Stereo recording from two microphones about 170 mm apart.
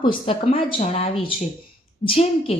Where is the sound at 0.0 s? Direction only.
30° left (ahead or behind).